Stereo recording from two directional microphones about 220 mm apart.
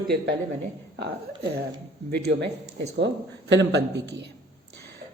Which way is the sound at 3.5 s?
50° right (ahead or behind).